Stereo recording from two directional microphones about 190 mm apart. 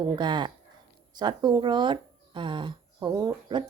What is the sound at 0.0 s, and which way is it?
Speech, 25° right (ahead or behind).